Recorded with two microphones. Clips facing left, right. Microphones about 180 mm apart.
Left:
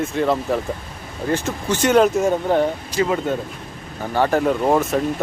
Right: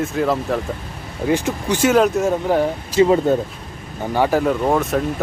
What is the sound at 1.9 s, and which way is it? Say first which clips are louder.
Speech: left 2 dB; centre (ahead or behind).